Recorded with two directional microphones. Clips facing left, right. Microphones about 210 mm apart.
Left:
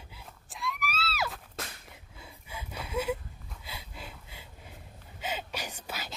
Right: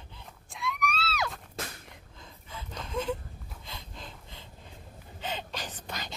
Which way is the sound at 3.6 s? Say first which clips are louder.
Left 1 dB; 10° left (ahead or behind).